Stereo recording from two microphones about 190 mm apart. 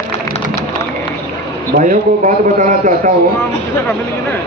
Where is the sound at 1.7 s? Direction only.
40° right (ahead or behind).